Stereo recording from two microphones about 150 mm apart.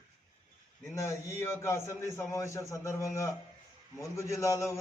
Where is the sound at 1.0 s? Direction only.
15° left (ahead or behind).